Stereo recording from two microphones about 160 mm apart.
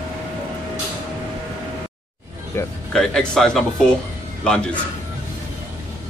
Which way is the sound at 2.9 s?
5° left (ahead or behind).